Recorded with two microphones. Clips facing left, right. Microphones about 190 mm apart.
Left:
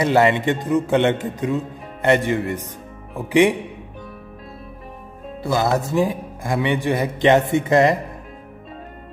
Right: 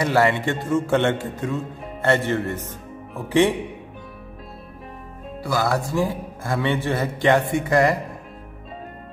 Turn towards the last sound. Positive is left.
turn(degrees=20)  # may be behind; listen again after turning